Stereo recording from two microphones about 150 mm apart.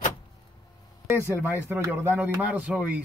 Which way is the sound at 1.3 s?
15° right (ahead or behind).